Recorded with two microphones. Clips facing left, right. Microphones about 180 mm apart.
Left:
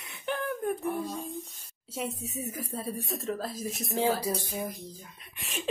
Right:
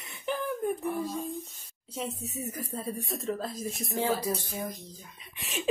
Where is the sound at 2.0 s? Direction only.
10° left (ahead or behind).